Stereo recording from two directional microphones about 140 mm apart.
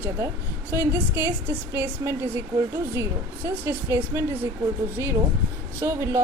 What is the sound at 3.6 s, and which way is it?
Speech, 20° right (ahead or behind).